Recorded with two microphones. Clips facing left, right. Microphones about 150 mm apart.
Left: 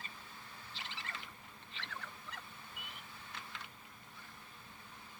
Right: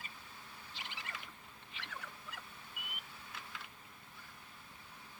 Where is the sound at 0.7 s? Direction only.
15° right (ahead or behind).